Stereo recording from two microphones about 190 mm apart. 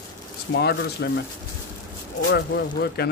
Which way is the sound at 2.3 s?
60° left (ahead or behind).